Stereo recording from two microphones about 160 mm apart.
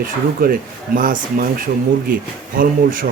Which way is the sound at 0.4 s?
65° right (ahead or behind).